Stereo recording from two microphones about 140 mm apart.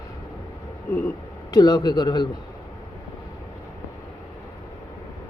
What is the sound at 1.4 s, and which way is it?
Speech, 25° left (ahead or behind).